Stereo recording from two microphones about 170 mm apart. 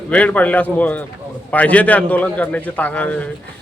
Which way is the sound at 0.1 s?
10° left (ahead or behind).